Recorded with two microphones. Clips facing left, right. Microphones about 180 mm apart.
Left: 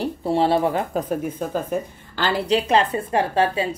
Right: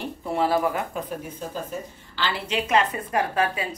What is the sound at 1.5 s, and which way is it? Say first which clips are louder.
A woman's voice: left 8 dB; 50° left (ahead or behind).